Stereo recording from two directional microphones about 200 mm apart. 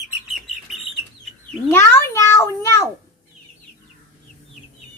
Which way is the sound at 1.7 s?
10° left (ahead or behind).